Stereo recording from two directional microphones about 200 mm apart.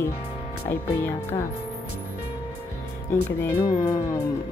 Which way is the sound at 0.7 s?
10° left (ahead or behind).